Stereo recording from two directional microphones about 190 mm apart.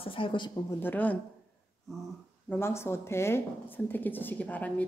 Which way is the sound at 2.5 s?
15° left (ahead or behind).